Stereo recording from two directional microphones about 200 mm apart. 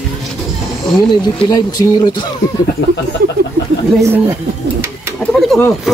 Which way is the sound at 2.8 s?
70° left (ahead or behind).